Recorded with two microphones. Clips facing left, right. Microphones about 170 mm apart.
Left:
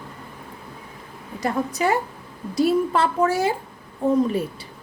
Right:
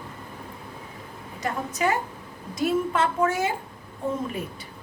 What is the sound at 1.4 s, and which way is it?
A woman's voice, 35° left (ahead or behind).